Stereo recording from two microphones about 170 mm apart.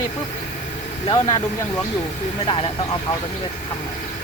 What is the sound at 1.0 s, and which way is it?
Speech, 25° left (ahead or behind).